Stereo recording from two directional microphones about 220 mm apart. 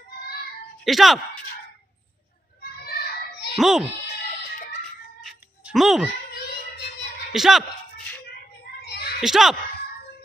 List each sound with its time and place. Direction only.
0.8 s speech: centre (ahead or behind)
2.6 s children playing: 45° left (ahead or behind)
3.5 s speech: centre (ahead or behind)
5.2 s a sound: centre (ahead or behind)
7.3 s speech: centre (ahead or behind)
8.8 s children playing: 45° left (ahead or behind)
9.2 s speech: centre (ahead or behind)